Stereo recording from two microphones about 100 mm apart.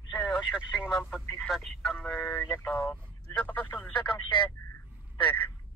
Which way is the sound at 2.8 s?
20° left (ahead or behind).